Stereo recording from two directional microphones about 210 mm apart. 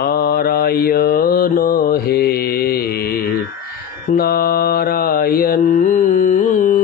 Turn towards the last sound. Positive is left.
turn(degrees=40)  # may be behind; listen again after turning